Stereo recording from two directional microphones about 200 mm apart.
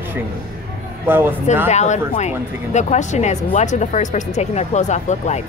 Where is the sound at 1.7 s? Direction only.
35° left (ahead or behind).